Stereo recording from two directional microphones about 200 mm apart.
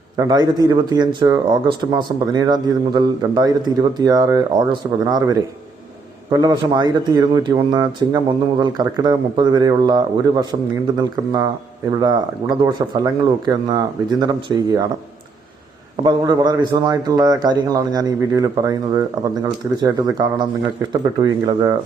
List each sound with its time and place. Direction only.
0.2 s speech: 20° right (ahead or behind)
16.0 s speech: 20° right (ahead or behind)